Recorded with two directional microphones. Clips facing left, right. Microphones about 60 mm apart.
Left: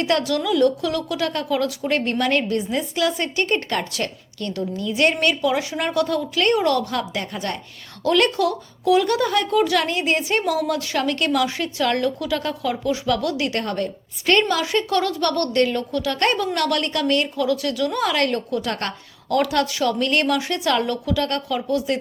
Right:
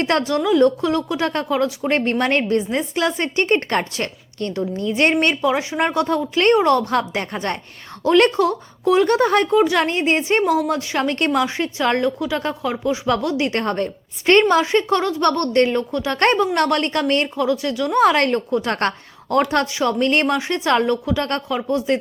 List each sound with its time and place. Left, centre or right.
0.0 s a woman's voice: right
16.1 s a woman's voice: right
18.0 s a woman's voice: right
19.4 s a woman's voice: right